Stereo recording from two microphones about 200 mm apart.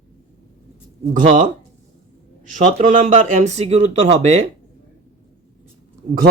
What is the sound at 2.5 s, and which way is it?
A man's voice, 35° right (ahead or behind).